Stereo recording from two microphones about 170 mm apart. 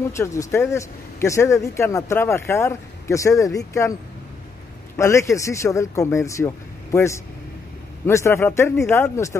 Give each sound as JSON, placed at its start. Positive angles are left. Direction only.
{"t": 0.1, "sound": "speech", "side_deg": 20}
{"t": 4.9, "sound": "speech", "side_deg": 15}